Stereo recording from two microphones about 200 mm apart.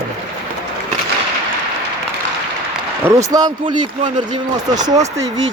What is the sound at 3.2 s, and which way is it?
Speech, 20° right (ahead or behind).